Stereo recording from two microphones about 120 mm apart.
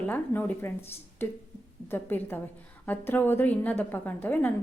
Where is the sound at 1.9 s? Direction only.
15° left (ahead or behind).